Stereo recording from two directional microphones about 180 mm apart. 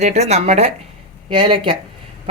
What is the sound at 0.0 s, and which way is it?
Speech, 35° right (ahead or behind).